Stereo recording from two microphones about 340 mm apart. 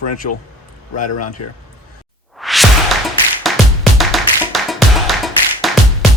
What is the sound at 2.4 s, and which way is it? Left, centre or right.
Music, centre.